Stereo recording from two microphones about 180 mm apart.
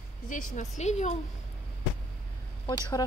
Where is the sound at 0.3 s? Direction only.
40° left (ahead or behind).